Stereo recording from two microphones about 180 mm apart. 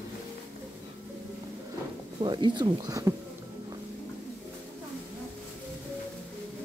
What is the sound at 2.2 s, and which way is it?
Speech, 25° right (ahead or behind).